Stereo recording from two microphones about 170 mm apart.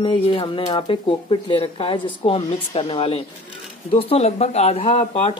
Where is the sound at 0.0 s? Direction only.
30° left (ahead or behind).